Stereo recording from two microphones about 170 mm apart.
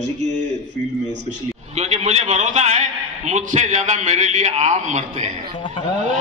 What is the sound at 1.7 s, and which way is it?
A man's voice, 40° right (ahead or behind).